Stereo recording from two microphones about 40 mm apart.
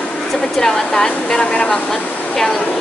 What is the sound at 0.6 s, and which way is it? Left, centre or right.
Speech, centre.